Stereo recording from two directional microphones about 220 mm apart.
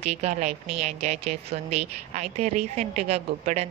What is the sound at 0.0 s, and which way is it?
A woman's voice, 30° right (ahead or behind).